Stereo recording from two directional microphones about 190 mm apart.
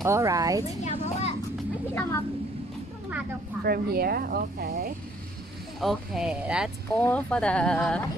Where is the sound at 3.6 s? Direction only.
55° right (ahead or behind).